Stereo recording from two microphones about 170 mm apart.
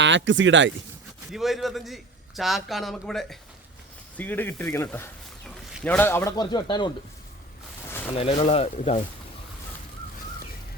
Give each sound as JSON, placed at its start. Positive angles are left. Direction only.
{"t": 0.0, "sound": "speech", "side_deg": -90}
{"t": 1.3, "sound": "a man's voice", "side_deg": 0}
{"t": 6.3, "sound": "speech", "side_deg": 25}
{"t": 8.1, "sound": "speech", "side_deg": 35}